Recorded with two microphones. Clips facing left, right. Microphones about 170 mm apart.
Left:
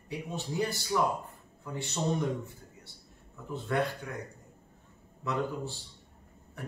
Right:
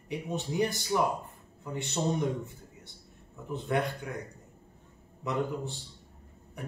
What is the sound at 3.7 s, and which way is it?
Speech, 20° right (ahead or behind).